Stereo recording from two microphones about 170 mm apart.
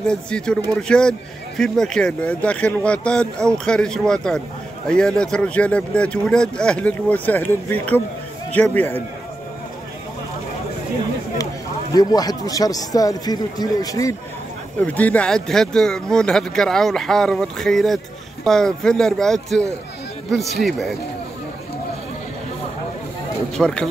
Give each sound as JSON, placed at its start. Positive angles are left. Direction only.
{"t": 0.0, "sound": "speech", "side_deg": 5}
{"t": 11.9, "sound": "speech", "side_deg": 20}
{"t": 14.9, "sound": "speech", "side_deg": 10}
{"t": 23.5, "sound": "speech", "side_deg": 5}